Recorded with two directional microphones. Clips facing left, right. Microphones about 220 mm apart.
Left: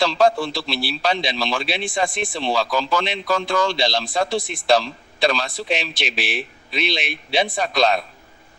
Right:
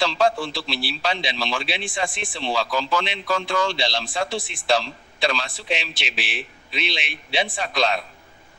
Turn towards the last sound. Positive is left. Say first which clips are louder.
# left 4 dB
turn(degrees=40)  # may be behind; listen again after turning